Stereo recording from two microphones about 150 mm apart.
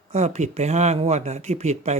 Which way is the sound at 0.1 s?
50° right (ahead or behind).